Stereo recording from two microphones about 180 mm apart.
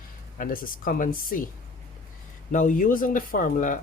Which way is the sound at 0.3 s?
50° left (ahead or behind).